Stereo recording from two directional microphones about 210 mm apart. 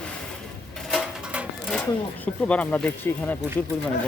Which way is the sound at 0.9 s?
Centre (ahead or behind).